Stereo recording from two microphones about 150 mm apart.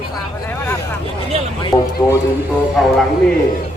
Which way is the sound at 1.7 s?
25° left (ahead or behind).